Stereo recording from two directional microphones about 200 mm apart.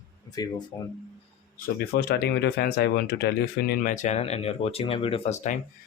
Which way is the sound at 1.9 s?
55° left (ahead or behind).